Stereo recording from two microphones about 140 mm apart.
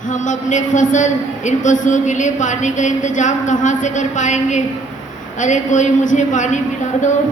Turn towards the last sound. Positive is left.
turn(degrees=60)  # may be behind; listen again after turning